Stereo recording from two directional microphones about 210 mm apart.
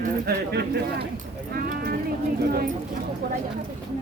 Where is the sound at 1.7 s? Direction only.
40° right (ahead or behind).